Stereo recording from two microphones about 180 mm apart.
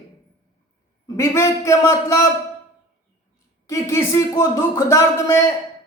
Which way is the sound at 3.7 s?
15° left (ahead or behind).